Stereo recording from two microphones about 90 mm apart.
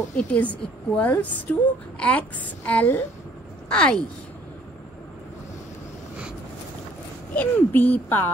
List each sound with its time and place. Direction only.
0.3 s speech: 15° left (ahead or behind)
3.7 s speech: 10° left (ahead or behind)
7.3 s speech: 20° left (ahead or behind)